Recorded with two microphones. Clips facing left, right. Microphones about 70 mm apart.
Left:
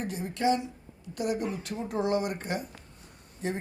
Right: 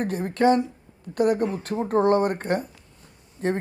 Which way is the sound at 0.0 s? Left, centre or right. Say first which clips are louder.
Right 8 dB; right.